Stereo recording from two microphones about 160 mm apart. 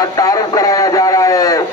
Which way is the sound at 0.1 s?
25° left (ahead or behind).